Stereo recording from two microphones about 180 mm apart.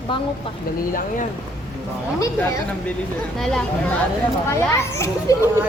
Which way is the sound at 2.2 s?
15° left (ahead or behind).